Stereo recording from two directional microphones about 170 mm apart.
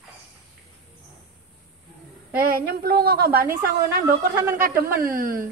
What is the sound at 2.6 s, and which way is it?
Speech, 65° right (ahead or behind).